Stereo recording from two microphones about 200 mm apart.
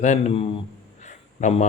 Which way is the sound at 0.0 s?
35° left (ahead or behind).